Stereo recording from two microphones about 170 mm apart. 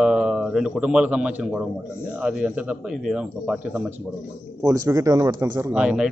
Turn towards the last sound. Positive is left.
turn(degrees=-5)  # may be behind; listen again after turning